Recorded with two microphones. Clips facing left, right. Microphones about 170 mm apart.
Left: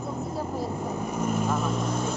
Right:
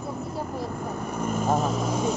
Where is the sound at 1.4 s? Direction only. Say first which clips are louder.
Right 3 dB; 45° right (ahead or behind).